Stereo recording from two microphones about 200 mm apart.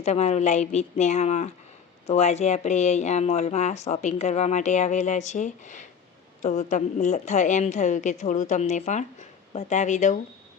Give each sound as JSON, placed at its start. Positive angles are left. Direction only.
{"t": 0.0, "sound": "speech", "side_deg": 35}